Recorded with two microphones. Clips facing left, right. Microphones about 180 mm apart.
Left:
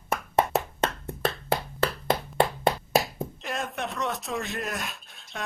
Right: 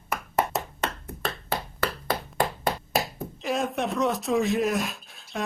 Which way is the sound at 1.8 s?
25° left (ahead or behind).